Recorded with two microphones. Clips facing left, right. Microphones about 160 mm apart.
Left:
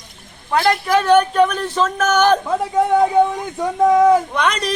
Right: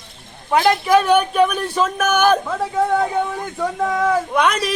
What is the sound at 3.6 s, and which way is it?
Speech, 20° left (ahead or behind).